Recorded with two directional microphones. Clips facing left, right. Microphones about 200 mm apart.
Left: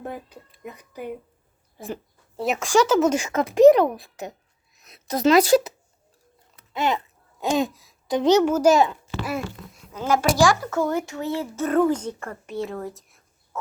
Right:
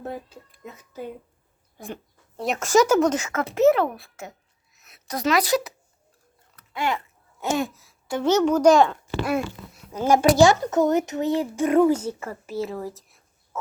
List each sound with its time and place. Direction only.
0.6 s speech: 15° left (ahead or behind)
1.8 s speech: centre (ahead or behind)
3.0 s a woman's voice: 10° left (ahead or behind); by 5.7 s 30° left (ahead or behind)
6.7 s a child's voice: 20° left (ahead or behind); by 9.8 s centre (ahead or behind)
10.0 s speech: 15° right (ahead or behind); by 13.6 s centre (ahead or behind)